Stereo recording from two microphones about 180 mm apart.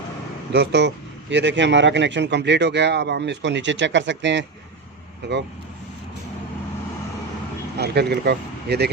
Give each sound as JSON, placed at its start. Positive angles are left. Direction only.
{"t": 0.5, "sound": "speech", "side_deg": -65}
{"t": 5.2, "sound": "speech", "side_deg": -70}
{"t": 7.8, "sound": "speech", "side_deg": -65}